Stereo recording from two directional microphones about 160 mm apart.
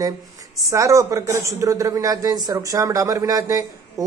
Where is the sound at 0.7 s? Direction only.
20° right (ahead or behind).